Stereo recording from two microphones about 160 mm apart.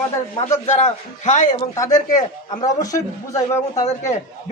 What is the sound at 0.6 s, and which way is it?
Speech, 50° left (ahead or behind).